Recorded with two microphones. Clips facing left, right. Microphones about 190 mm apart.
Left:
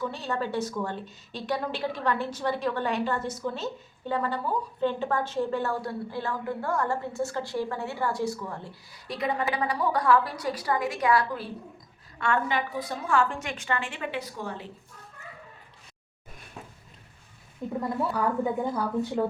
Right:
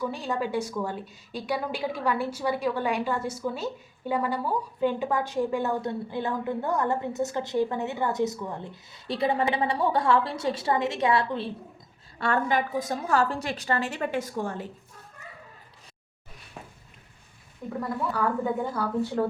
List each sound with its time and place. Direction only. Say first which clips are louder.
0.0 s speech: right 1 dB; 10° right (ahead or behind)
12.2 s a woman's voice: right 2 dB; 40° right (ahead or behind)
17.6 s speech: left 2 dB; 20° left (ahead or behind)